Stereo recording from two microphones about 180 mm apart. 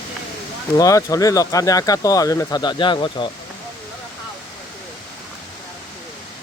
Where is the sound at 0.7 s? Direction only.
20° left (ahead or behind).